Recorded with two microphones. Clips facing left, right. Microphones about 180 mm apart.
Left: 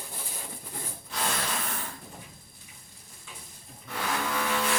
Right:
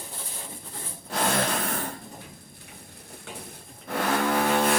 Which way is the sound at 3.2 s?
65° right (ahead or behind).